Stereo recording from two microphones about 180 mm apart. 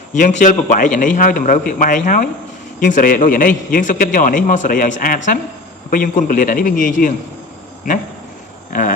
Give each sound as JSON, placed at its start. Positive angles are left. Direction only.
{"t": 0.1, "sound": "a man's voice", "side_deg": 40}